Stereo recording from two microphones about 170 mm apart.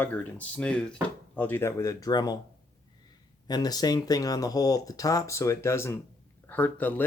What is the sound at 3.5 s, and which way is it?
Speech, 20° left (ahead or behind).